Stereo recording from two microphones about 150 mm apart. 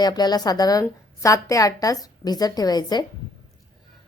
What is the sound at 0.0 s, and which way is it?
A woman's voice, 25° left (ahead or behind).